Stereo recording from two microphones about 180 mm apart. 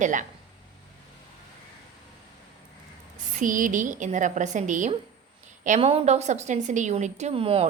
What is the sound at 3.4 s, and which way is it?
A woman's voice, 45° right (ahead or behind).